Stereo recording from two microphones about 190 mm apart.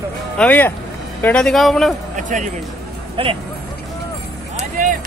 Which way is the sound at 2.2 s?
40° right (ahead or behind).